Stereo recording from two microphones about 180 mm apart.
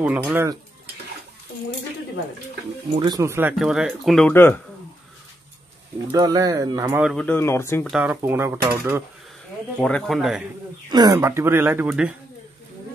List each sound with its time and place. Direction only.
0.0 s speech: 10° right (ahead or behind)
3.0 s speech: 20° right (ahead or behind)
3.5 s speech: 5° right (ahead or behind)
4.3 s speech: 10° left (ahead or behind)
6.1 s speech: 20° right (ahead or behind)
7.0 s speech: centre (ahead or behind)
7.9 s speech: 5° right (ahead or behind)
9.8 s speech: 5° left (ahead or behind)
10.9 s speech: 20° right (ahead or behind)